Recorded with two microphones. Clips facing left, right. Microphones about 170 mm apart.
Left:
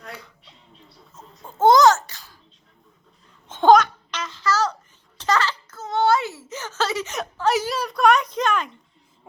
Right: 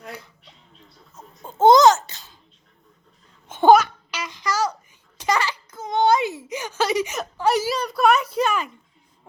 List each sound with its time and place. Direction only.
1.5 s babbling: 20° right (ahead or behind)
3.5 s babbling: 10° right (ahead or behind)
7.5 s a sound: centre (ahead or behind)